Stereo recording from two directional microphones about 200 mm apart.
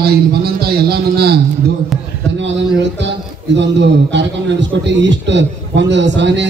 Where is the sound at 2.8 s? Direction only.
60° right (ahead or behind).